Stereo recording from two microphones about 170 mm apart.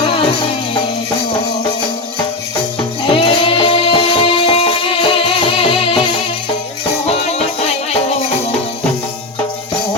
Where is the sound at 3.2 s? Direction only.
30° left (ahead or behind).